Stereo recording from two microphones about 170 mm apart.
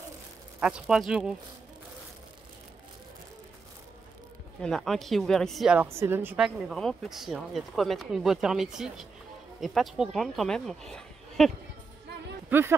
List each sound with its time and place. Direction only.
0.6 s a woman's voice: 5° right (ahead or behind)
4.6 s a woman's voice: 5° left (ahead or behind)
12.4 s speech: 10° right (ahead or behind)